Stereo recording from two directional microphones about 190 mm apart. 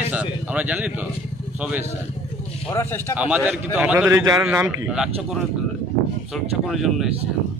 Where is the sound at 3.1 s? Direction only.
10° right (ahead or behind).